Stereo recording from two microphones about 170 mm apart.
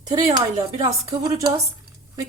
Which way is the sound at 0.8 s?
20° right (ahead or behind).